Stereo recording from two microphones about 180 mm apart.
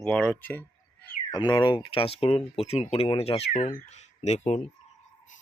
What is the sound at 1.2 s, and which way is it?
Speech, 20° left (ahead or behind).